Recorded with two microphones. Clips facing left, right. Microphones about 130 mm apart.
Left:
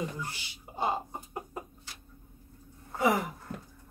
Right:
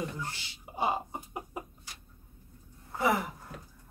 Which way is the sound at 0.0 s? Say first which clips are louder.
Left 1 dB; 10° left (ahead or behind).